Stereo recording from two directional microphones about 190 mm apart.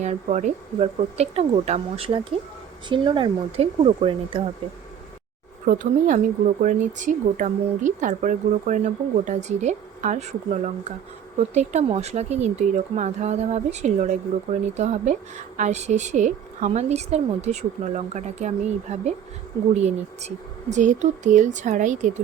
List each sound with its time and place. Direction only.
0.0 s speech: 35° right (ahead or behind)
5.6 s speech: 45° right (ahead or behind)